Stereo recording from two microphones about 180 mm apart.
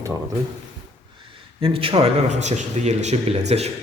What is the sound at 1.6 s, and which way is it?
Speech, 30° right (ahead or behind).